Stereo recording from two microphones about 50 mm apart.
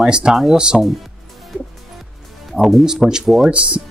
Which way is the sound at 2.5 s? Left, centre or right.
Centre.